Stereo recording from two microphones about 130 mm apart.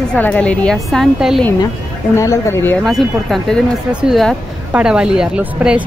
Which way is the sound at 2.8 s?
Centre (ahead or behind).